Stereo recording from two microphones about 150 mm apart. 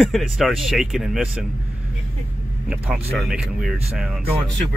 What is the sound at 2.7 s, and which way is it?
Speech, 5° right (ahead or behind).